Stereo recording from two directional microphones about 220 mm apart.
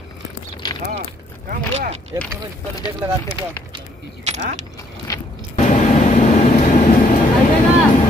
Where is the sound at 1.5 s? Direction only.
30° right (ahead or behind).